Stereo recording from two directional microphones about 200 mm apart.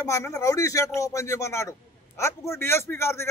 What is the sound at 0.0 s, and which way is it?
Speech, 15° left (ahead or behind).